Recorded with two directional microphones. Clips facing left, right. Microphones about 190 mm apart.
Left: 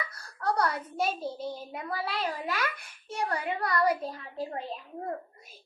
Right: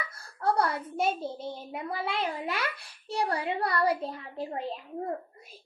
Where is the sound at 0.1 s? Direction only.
30° right (ahead or behind).